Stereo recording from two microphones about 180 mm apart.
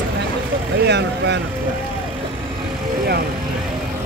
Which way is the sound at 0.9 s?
70° right (ahead or behind).